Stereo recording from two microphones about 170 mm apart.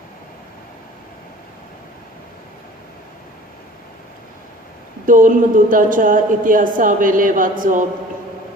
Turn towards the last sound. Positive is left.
turn(degrees=-50)  # may be behind; listen again after turning